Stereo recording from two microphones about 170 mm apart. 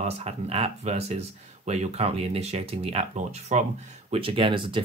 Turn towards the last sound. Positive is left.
turn(degrees=-30)  # may be behind; listen again after turning